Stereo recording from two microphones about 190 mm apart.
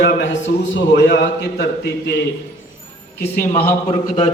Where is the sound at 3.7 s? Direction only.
30° left (ahead or behind).